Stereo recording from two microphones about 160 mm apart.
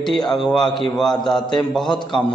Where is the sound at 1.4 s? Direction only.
25° left (ahead or behind).